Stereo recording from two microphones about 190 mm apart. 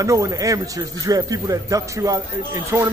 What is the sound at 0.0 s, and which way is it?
A man's voice, 15° right (ahead or behind).